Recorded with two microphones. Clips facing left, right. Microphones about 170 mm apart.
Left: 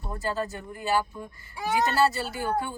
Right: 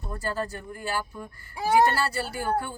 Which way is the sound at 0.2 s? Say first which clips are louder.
Left 1 dB; 20° left (ahead or behind).